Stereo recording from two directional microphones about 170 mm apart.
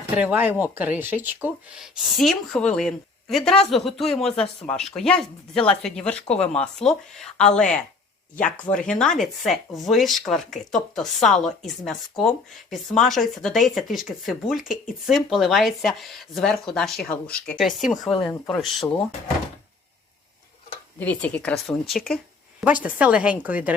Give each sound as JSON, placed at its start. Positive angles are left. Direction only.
{"t": 0.1, "sound": "speech", "side_deg": -10}
{"t": 21.0, "sound": "a woman's voice", "side_deg": 10}